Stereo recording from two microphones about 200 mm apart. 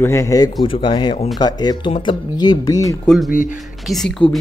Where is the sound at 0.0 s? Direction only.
15° left (ahead or behind).